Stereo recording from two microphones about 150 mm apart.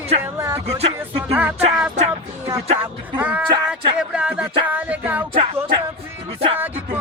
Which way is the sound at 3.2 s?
10° right (ahead or behind).